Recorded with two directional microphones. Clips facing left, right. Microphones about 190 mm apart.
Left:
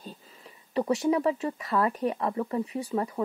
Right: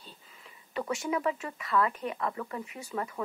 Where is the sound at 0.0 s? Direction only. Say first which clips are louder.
Left 8 dB; 35° left (ahead or behind).